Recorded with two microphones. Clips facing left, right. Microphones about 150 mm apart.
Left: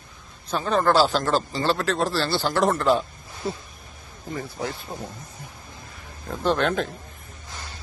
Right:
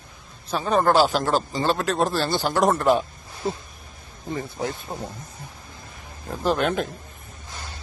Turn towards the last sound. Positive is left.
turn(degrees=-10)  # may be behind; listen again after turning